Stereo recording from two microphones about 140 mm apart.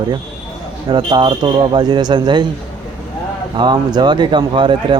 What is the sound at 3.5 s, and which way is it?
A man's voice, 30° right (ahead or behind).